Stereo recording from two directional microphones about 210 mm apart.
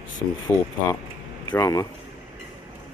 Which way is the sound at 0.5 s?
10° left (ahead or behind).